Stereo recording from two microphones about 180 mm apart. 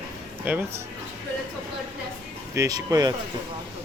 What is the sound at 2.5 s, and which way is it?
Speech, 20° right (ahead or behind).